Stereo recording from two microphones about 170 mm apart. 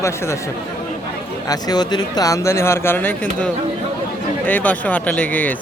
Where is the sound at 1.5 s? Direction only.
25° left (ahead or behind).